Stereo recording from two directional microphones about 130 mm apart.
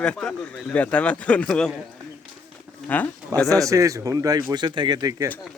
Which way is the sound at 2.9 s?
10° left (ahead or behind).